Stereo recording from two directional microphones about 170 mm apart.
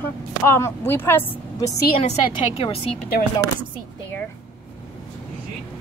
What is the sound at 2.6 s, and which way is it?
Speech, 35° left (ahead or behind).